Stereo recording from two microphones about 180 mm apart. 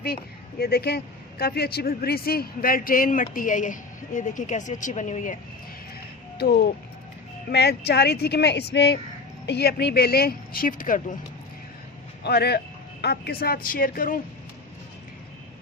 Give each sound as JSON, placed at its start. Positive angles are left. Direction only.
{"t": 0.6, "sound": "speech", "side_deg": 60}
{"t": 6.4, "sound": "speech", "side_deg": 65}
{"t": 12.2, "sound": "speech", "side_deg": 65}